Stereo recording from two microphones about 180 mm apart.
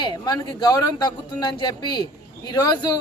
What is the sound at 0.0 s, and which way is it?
Speech, 25° left (ahead or behind).